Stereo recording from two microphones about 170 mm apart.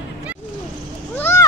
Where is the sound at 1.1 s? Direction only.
10° left (ahead or behind).